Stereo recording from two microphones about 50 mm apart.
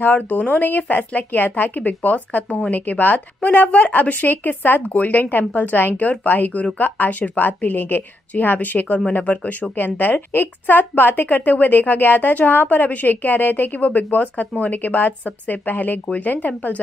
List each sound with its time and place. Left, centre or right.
0.0 s speech: left